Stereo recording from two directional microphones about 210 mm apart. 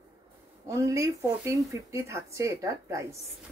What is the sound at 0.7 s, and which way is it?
Speech, 15° right (ahead or behind).